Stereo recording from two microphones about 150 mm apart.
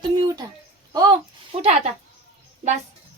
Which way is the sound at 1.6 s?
45° right (ahead or behind).